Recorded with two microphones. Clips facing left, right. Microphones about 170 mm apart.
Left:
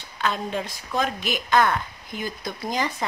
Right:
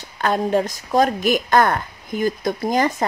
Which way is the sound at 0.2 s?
50° right (ahead or behind).